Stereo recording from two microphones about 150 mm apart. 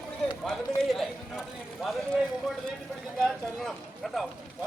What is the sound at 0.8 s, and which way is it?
Speech, centre (ahead or behind).